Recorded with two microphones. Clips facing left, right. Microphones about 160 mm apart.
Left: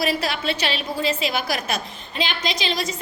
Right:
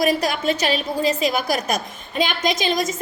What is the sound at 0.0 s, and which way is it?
A woman's voice, 45° right (ahead or behind).